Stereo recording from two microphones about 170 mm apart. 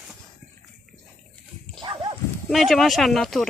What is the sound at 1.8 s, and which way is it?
Dog, 30° right (ahead or behind).